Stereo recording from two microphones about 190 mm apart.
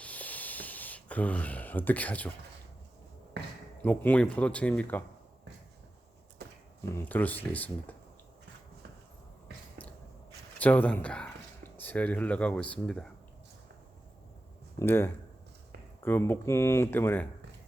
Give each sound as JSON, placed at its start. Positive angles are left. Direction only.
{"t": 0.0, "sound": "a sound", "side_deg": 10}
{"t": 3.8, "sound": "speech", "side_deg": 10}
{"t": 6.4, "sound": "a sound", "side_deg": -60}
{"t": 6.9, "sound": "speech", "side_deg": 10}
{"t": 10.6, "sound": "speech", "side_deg": 10}
{"t": 14.8, "sound": "speech", "side_deg": 10}